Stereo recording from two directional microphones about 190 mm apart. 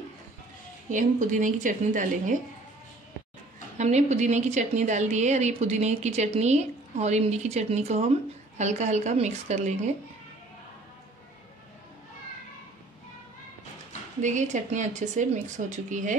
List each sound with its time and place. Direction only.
0.8 s speech: 40° right (ahead or behind)
3.7 s a woman's voice: 35° right (ahead or behind)
14.2 s a woman's voice: 40° right (ahead or behind)